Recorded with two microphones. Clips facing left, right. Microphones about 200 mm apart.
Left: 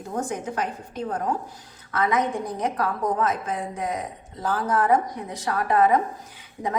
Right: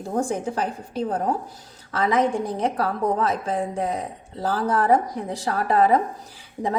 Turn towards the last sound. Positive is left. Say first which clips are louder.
# right 2 dB
turn(degrees=-30)  # may be behind; listen again after turning